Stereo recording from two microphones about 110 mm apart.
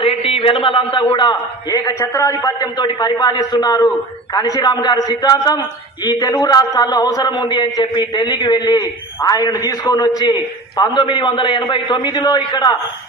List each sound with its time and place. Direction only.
0.0 s a man's voice: 55° left (ahead or behind)
8.8 s a man's voice: 35° left (ahead or behind)